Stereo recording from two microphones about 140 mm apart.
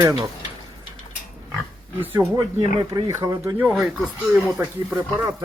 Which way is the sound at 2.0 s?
15° right (ahead or behind).